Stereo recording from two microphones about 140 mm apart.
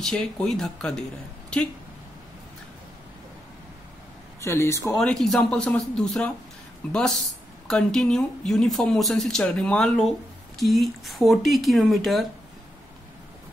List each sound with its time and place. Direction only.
0.0 s speech: 5° left (ahead or behind)
4.4 s a man's voice: 20° left (ahead or behind)
4.9 s speech: 5° left (ahead or behind)